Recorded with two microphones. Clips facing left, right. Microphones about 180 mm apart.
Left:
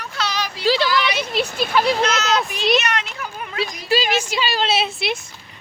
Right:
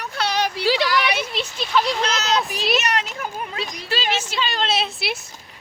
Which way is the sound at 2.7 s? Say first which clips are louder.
Left 1 dB; 40° right (ahead or behind).